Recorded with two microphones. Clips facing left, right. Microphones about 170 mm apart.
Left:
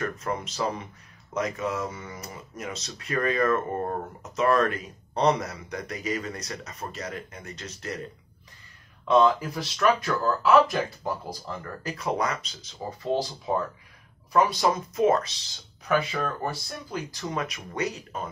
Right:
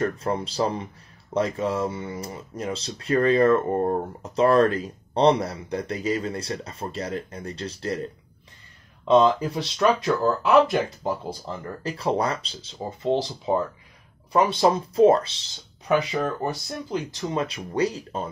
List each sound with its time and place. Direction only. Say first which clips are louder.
0.0 s speech: right 5 dB; 30° right (ahead or behind)
9.0 s speech: right 3 dB; 25° right (ahead or behind)
14.3 s speech: right 3 dB; 30° right (ahead or behind)
15.9 s speech: right 3 dB; 20° right (ahead or behind)